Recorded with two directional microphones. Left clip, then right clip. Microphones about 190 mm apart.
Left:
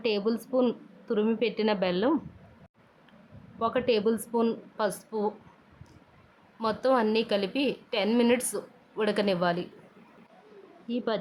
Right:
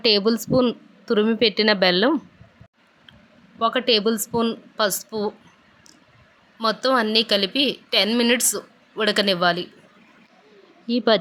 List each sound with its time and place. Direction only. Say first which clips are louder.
0.0 s a woman's voice: right 9 dB; 20° right (ahead or behind)
3.6 s a woman's voice: right 7 dB; 10° right (ahead or behind)
6.6 s a woman's voice: right 5 dB; 10° right (ahead or behind)
10.8 s speech: right 12 dB; 20° right (ahead or behind)